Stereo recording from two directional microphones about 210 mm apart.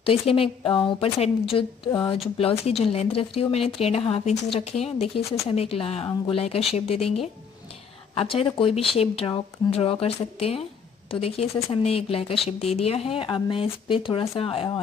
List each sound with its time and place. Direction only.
0.0 s a woman's voice: 25° left (ahead or behind)